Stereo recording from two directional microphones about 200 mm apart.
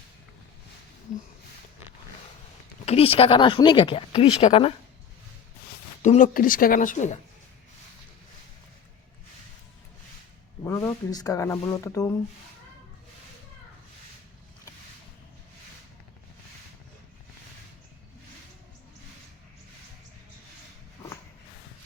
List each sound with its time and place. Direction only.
2.8 s speech: 30° left (ahead or behind)
6.0 s speech: 40° left (ahead or behind)
10.6 s speech: 15° left (ahead or behind)